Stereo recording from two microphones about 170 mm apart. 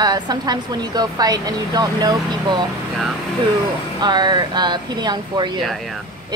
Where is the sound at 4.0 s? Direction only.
25° right (ahead or behind).